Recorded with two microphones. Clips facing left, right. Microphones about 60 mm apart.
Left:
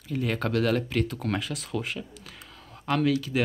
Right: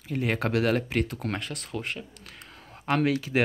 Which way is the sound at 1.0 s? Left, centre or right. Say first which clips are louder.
Left 2 dB; centre.